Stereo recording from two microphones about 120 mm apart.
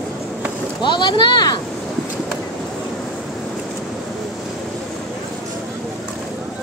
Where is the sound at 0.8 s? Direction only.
40° left (ahead or behind).